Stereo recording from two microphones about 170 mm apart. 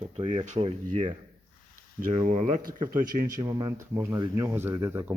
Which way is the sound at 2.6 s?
55° right (ahead or behind).